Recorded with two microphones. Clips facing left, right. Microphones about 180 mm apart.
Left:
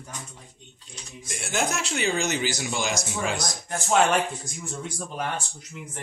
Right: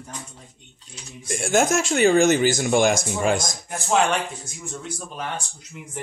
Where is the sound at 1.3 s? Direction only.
45° right (ahead or behind).